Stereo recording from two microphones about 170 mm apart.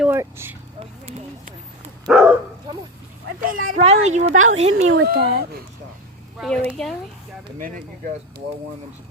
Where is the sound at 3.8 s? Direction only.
40° right (ahead or behind).